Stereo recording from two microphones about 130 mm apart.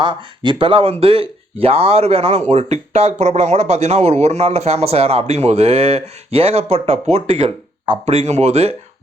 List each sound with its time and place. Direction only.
0.0 s speech: 35° right (ahead or behind); by 8.7 s 55° right (ahead or behind)